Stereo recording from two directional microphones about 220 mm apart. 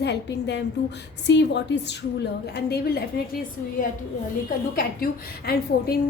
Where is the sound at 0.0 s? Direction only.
50° left (ahead or behind).